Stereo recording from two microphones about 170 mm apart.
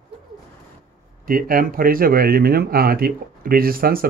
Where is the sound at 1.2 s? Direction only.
55° right (ahead or behind).